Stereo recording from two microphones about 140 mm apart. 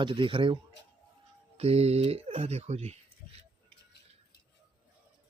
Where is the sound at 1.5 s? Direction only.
45° right (ahead or behind).